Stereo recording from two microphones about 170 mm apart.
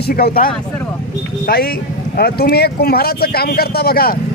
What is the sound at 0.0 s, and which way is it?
Speech, 65° left (ahead or behind).